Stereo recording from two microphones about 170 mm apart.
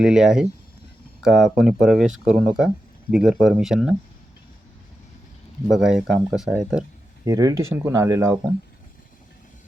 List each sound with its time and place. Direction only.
0.0 s speech: 5° right (ahead or behind)
5.6 s speech: centre (ahead or behind)
7.3 s speech: 20° right (ahead or behind)